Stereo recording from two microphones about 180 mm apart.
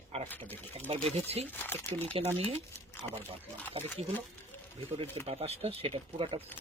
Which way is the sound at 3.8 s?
10° left (ahead or behind).